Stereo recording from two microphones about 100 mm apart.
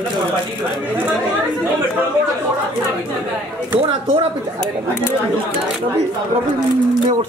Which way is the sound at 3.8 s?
75° right (ahead or behind).